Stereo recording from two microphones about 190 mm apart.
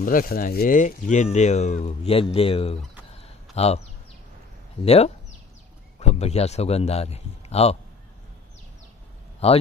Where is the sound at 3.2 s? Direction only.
35° left (ahead or behind).